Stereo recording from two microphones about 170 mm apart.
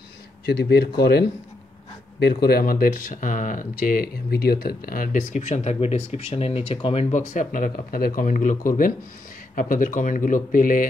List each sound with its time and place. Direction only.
0.5 s speech: 70° left (ahead or behind)
2.1 s speech: 70° left (ahead or behind); by 10.9 s 55° left (ahead or behind)